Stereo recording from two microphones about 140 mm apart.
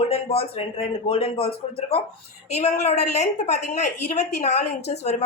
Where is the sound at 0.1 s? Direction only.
45° left (ahead or behind).